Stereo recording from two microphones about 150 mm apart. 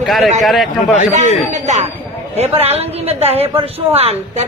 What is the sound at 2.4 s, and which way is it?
Speech, 45° right (ahead or behind).